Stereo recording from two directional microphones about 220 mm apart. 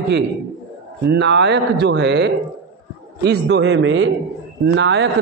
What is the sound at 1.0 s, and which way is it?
A man's voice, 50° right (ahead or behind).